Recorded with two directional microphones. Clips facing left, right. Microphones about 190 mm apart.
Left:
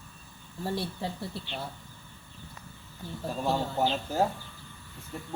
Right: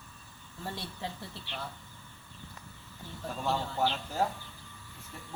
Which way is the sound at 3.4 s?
15° left (ahead or behind).